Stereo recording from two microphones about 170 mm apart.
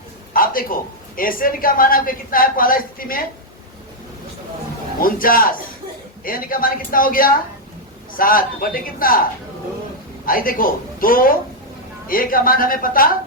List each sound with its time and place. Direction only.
0.4 s a sound: 55° left (ahead or behind)
1.1 s a woman's voice: 55° left (ahead or behind)
4.9 s a woman's voice: 55° left (ahead or behind)
10.2 s a woman's voice: 55° left (ahead or behind)